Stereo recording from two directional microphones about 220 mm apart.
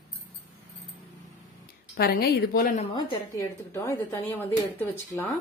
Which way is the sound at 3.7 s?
10° left (ahead or behind).